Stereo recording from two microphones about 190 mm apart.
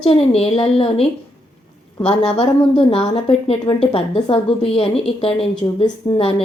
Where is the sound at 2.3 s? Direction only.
30° left (ahead or behind).